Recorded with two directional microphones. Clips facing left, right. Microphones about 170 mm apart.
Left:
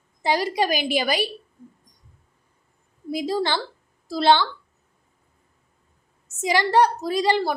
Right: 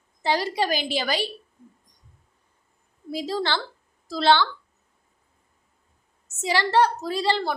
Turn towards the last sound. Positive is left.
turn(degrees=15)  # may be behind; listen again after turning